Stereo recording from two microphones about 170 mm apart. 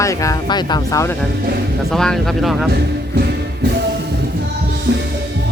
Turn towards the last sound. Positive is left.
turn(degrees=-75)  # may be behind; listen again after turning